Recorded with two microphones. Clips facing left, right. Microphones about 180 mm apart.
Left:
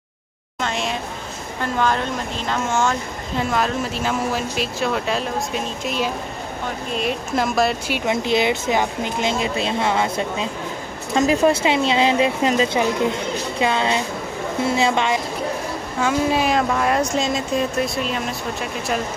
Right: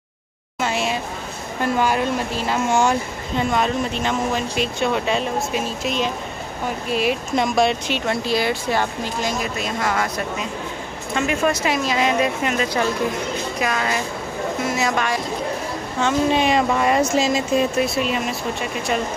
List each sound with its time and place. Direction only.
0.6 s a sound: 5° right (ahead or behind)
1.6 s speech: 10° right (ahead or behind)
3.3 s speech: centre (ahead or behind)
8.1 s speech: 20° left (ahead or behind)
16.0 s speech: 5° left (ahead or behind)